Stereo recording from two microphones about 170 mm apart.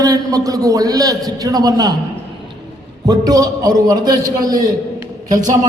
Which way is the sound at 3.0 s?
20° right (ahead or behind).